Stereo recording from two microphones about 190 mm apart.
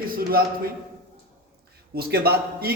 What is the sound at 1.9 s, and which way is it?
Speech, 55° right (ahead or behind).